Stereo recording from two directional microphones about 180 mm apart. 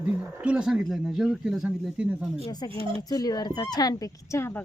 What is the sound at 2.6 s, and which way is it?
Speech, 20° left (ahead or behind).